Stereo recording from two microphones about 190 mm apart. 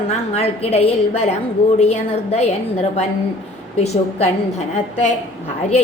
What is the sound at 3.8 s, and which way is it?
Speech, 35° left (ahead or behind).